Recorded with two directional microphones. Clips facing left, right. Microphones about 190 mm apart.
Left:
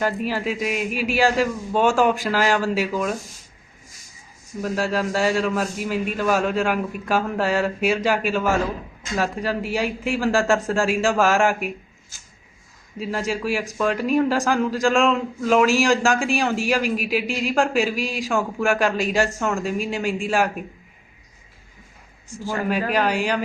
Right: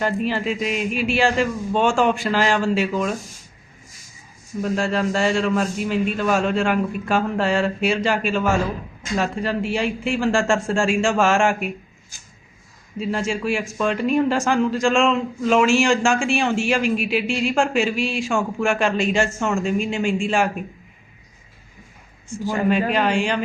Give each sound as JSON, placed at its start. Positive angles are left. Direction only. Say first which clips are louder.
{"t": 0.0, "sound": "a man's voice", "louder": "right 1 dB", "side_deg": 5}
{"t": 4.6, "sound": "a man's voice", "louder": "right 2 dB", "side_deg": 5}
{"t": 12.1, "sound": "a sound", "louder": "right 1 dB", "side_deg": -15}
{"t": 13.0, "sound": "a man's voice", "louder": "right 2 dB", "side_deg": 5}
{"t": 18.0, "sound": "speech", "louder": "right 3 dB", "side_deg": 40}
{"t": 18.3, "sound": "a man's voice", "louder": "left 2 dB", "side_deg": 0}
{"t": 22.9, "sound": "a man's voice", "louder": "right 1 dB", "side_deg": 5}